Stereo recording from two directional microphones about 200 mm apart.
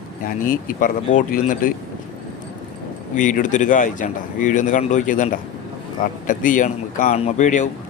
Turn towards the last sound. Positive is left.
turn(degrees=40)  # may be behind; listen again after turning